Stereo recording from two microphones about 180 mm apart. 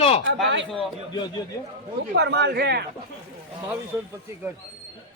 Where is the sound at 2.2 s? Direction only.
70° right (ahead or behind).